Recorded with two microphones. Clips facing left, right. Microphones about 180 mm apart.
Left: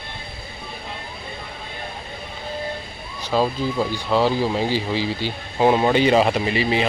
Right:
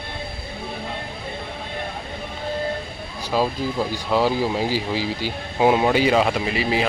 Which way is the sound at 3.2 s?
10° right (ahead or behind).